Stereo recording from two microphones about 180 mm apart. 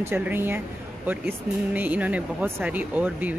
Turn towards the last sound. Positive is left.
turn(degrees=-10)  # may be behind; listen again after turning